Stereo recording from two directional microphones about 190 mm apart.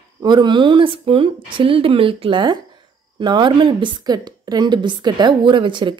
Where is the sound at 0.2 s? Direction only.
25° right (ahead or behind).